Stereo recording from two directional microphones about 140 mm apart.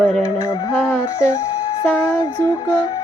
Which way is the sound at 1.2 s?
25° left (ahead or behind).